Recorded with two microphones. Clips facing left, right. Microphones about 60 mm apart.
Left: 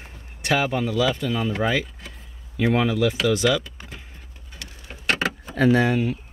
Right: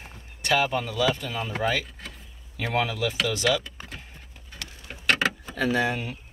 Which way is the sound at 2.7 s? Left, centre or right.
Centre.